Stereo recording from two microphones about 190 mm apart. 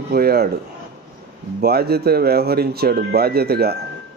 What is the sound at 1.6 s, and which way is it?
A man's voice, 55° right (ahead or behind).